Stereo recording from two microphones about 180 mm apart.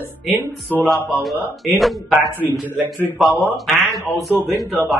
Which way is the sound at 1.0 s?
Centre (ahead or behind).